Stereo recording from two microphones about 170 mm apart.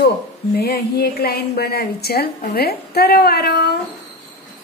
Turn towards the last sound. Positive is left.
turn(degrees=70)  # may be behind; listen again after turning